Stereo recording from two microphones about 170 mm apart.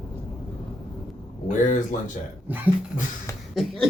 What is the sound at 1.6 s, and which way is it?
Speech, 50° left (ahead or behind).